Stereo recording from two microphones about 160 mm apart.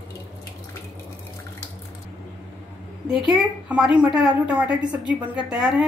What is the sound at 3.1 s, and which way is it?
A woman's voice, 5° right (ahead or behind).